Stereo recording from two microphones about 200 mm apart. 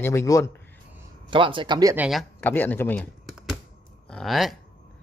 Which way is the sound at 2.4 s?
10° left (ahead or behind).